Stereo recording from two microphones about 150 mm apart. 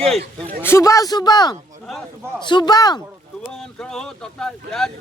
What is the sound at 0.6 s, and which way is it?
Speech, 20° left (ahead or behind).